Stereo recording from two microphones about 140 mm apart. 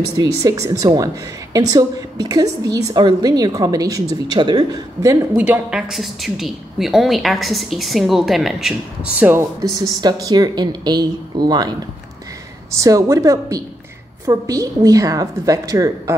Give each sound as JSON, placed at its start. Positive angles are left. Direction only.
{"t": 0.1, "sound": "a woman's voice", "side_deg": -25}
{"t": 5.4, "sound": "a woman's voice", "side_deg": -10}
{"t": 12.7, "sound": "a woman's voice", "side_deg": -25}